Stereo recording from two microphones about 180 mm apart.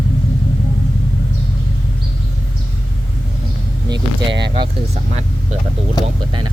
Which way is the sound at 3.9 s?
25° right (ahead or behind).